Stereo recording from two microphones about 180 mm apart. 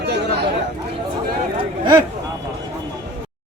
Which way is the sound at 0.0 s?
65° right (ahead or behind).